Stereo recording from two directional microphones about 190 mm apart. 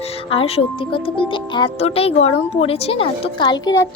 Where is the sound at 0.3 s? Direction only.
30° left (ahead or behind).